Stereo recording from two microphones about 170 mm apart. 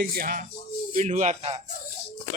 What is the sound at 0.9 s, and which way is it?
Speech, 45° right (ahead or behind).